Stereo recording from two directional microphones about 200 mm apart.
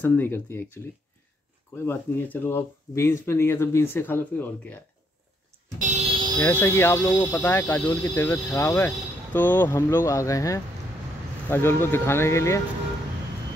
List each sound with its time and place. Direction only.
0.0 s speech: 10° left (ahead or behind)
1.9 s speech: 10° left (ahead or behind)
5.8 s music: 40° right (ahead or behind)
6.4 s speech: 10° left (ahead or behind)